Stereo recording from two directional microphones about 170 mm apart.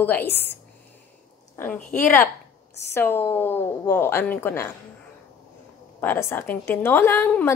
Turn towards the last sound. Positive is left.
turn(degrees=10)  # may be behind; listen again after turning